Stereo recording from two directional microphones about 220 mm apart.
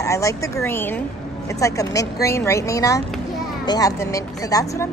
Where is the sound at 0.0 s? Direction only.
15° left (ahead or behind).